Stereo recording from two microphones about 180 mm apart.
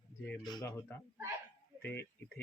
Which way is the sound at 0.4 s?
20° left (ahead or behind).